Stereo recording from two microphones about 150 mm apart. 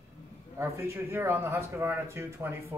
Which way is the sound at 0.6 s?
15° right (ahead or behind).